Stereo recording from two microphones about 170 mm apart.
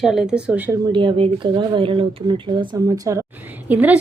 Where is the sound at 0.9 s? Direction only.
30° right (ahead or behind).